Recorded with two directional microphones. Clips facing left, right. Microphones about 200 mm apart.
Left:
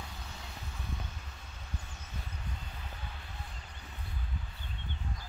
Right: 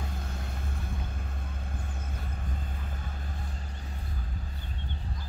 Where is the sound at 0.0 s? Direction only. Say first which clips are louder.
Right 7 dB; 50° right (ahead or behind).